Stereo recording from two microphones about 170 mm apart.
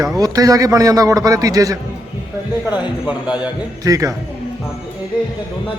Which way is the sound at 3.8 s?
20° right (ahead or behind).